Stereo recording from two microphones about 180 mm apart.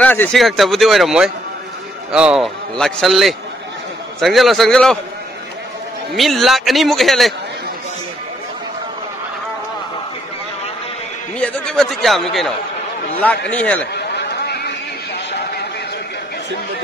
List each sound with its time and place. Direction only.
0.0 s speech: 10° left (ahead or behind)
6.1 s speech: centre (ahead or behind)
11.3 s a man's voice: 5° left (ahead or behind)
13.9 s a sound: 70° left (ahead or behind)